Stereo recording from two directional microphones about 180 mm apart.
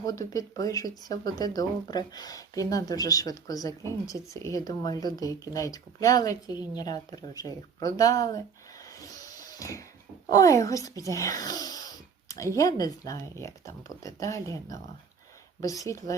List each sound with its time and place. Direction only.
0.0 s speech: 20° left (ahead or behind)
9.0 s music: 20° left (ahead or behind)
10.2 s speech: 20° left (ahead or behind)
15.9 s speech: 20° left (ahead or behind)